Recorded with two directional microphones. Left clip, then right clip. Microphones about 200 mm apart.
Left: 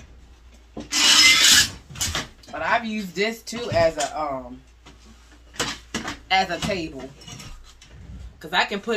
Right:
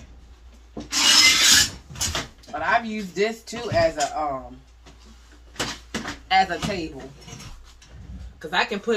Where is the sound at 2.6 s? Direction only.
20° left (ahead or behind).